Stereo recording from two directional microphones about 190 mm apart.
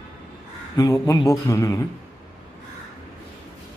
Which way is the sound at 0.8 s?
20° left (ahead or behind).